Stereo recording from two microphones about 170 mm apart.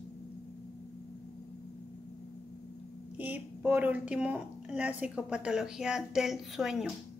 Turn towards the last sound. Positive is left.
turn(degrees=-5)  # may be behind; listen again after turning